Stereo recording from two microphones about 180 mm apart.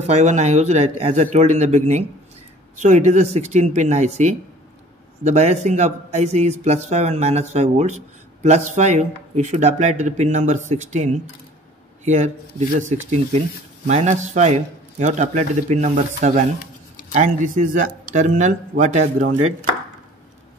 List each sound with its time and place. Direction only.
0.0 s a man's voice: 40° right (ahead or behind)